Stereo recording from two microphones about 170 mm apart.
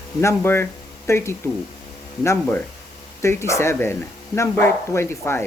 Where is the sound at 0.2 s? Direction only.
15° left (ahead or behind).